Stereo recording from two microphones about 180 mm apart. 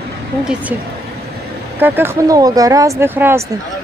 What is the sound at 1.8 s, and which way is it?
Speech, 15° right (ahead or behind).